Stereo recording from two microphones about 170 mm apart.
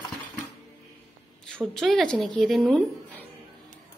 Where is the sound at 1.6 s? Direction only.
Centre (ahead or behind).